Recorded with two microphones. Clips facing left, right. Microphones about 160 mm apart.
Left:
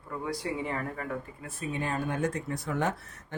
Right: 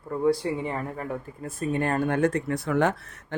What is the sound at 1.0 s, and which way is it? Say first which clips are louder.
Speech: right 4 dB; 45° right (ahead or behind).